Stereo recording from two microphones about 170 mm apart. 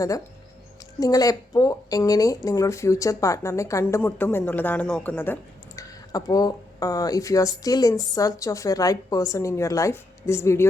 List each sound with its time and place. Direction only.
0.9 s speech: 20° left (ahead or behind)